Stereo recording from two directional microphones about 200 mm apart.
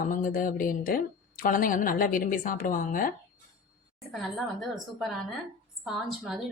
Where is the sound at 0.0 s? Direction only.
45° left (ahead or behind).